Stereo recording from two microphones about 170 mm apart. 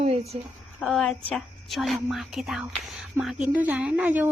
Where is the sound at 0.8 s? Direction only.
Centre (ahead or behind).